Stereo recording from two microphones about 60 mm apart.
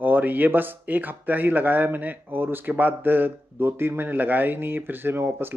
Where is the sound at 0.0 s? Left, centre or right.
Right.